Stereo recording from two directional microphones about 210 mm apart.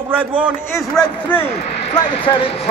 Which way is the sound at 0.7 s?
5° left (ahead or behind).